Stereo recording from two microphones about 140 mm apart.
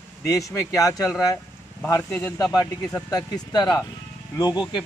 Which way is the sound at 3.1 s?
30° left (ahead or behind).